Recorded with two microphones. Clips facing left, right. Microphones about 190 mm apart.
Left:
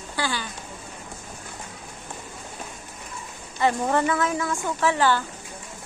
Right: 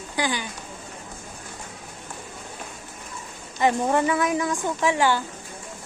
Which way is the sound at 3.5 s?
15° right (ahead or behind).